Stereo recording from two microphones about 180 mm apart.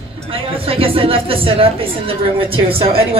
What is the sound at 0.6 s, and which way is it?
Speech, 30° right (ahead or behind).